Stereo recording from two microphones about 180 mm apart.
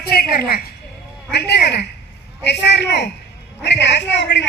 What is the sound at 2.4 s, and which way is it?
A man's voice, 70° left (ahead or behind).